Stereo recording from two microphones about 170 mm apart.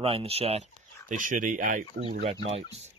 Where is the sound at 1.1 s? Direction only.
50° right (ahead or behind).